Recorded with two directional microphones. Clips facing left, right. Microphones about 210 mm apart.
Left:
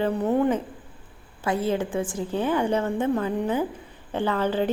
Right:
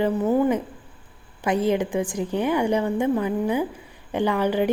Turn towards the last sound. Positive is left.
turn(degrees=-15)  # may be behind; listen again after turning